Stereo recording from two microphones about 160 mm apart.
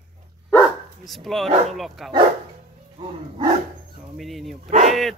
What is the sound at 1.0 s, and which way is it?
A child's voice, centre (ahead or behind).